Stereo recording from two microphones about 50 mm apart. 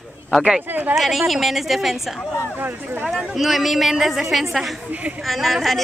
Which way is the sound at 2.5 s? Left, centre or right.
Right.